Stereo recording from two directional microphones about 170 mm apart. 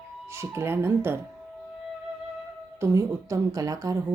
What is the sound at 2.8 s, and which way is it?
A woman's voice, 20° right (ahead or behind).